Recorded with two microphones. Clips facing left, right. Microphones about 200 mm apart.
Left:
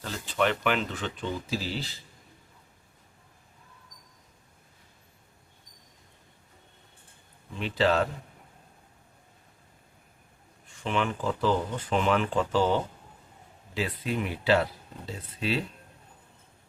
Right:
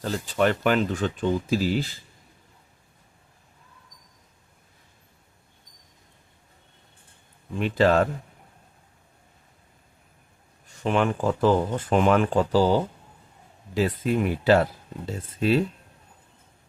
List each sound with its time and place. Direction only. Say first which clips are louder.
0.0 s speech: right 5 dB; 40° right (ahead or behind)
7.5 s speech: right 5 dB; 50° right (ahead or behind)
10.7 s speech: right 6 dB; 45° right (ahead or behind)